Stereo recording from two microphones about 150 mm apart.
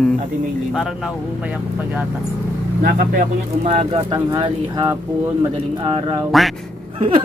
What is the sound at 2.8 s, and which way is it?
Speech, 65° right (ahead or behind).